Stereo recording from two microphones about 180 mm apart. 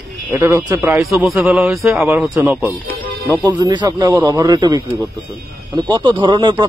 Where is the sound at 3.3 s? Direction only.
20° right (ahead or behind).